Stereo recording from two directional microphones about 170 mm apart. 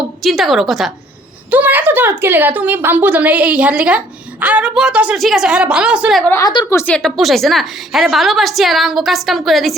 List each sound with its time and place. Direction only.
0.2 s a woman's voice: centre (ahead or behind)
6.4 s a woman's voice: 25° left (ahead or behind)
6.7 s a woman's voice: 10° left (ahead or behind)